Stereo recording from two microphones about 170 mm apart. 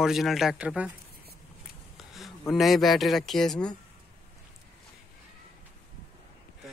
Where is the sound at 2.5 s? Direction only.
Centre (ahead or behind).